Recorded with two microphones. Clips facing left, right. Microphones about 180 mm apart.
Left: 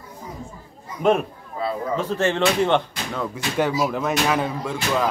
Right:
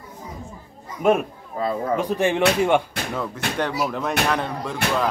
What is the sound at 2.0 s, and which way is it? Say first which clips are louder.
Speech: even; 15° right (ahead or behind).